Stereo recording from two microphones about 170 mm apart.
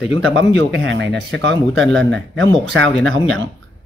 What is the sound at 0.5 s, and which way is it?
Speech, 90° right.